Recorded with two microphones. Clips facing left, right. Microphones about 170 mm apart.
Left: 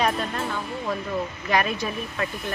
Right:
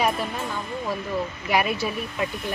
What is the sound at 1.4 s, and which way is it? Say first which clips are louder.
Speech: right 1 dB; 10° right (ahead or behind).